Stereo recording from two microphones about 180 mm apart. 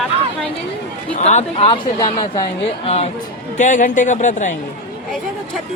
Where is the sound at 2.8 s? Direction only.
35° left (ahead or behind).